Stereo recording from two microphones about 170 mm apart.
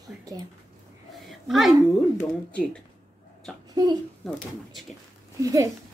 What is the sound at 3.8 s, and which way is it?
Speech, 25° right (ahead or behind).